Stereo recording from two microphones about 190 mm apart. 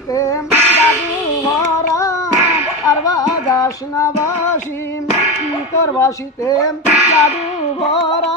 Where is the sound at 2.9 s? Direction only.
20° left (ahead or behind).